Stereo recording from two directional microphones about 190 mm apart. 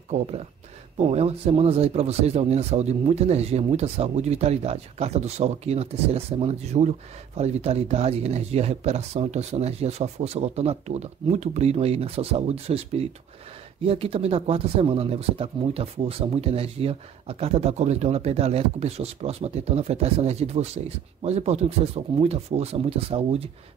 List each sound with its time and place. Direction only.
0.9 s speech: 35° right (ahead or behind)